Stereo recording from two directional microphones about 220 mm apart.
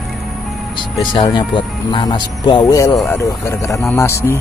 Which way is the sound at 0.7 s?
20° left (ahead or behind).